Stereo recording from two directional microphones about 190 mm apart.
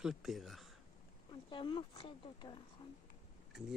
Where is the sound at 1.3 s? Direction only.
25° left (ahead or behind).